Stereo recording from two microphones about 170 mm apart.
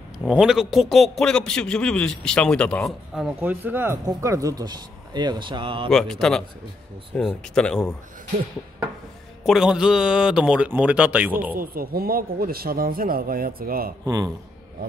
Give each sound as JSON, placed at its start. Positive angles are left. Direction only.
{"t": 0.2, "sound": "a man's voice", "side_deg": -5}
{"t": 5.9, "sound": "a man's voice", "side_deg": 5}
{"t": 9.4, "sound": "a man's voice", "side_deg": -5}
{"t": 11.5, "sound": "speech", "side_deg": -60}
{"t": 14.0, "sound": "a man's voice", "side_deg": -20}